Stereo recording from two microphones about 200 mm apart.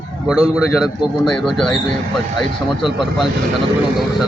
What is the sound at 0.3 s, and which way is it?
A man's voice, 5° right (ahead or behind).